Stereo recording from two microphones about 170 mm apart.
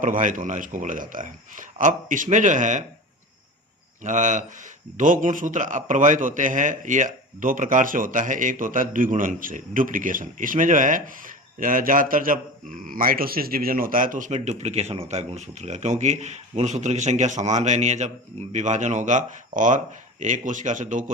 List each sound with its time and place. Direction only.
0.0 s speech: 50° right (ahead or behind)
4.0 s speech: 45° right (ahead or behind)